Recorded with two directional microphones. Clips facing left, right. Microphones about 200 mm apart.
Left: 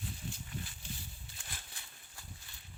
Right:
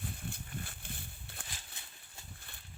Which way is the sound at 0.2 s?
55° right (ahead or behind).